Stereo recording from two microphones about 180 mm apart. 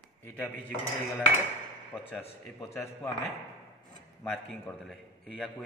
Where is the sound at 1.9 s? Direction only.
10° left (ahead or behind).